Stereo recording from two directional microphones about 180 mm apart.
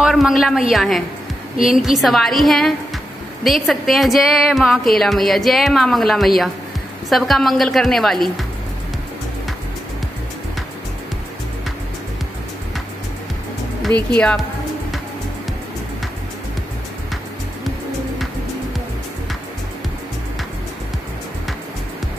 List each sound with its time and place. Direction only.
0.0 s a woman's voice: centre (ahead or behind)
14.1 s a woman's voice: 5° left (ahead or behind)